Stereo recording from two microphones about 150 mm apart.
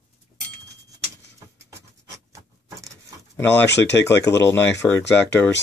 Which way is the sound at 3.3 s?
15° left (ahead or behind).